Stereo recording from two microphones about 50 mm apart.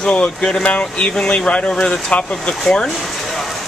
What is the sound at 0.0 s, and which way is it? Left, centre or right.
Speech, left.